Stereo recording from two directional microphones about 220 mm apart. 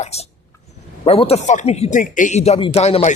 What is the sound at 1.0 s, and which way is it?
Speech, 25° left (ahead or behind).